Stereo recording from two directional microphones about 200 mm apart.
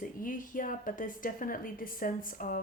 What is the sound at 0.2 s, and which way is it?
A woman's voice, 40° left (ahead or behind).